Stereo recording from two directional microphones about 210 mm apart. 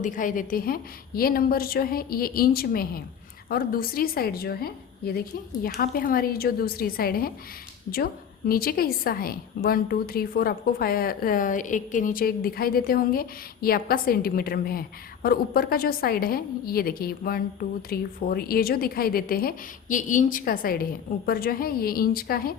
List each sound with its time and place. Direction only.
0.0 s a woman's voice: 40° left (ahead or behind)